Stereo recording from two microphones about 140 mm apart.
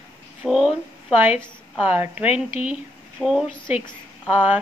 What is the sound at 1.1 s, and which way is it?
Speech, 15° right (ahead or behind).